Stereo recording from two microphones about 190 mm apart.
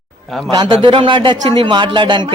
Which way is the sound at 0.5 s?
25° right (ahead or behind).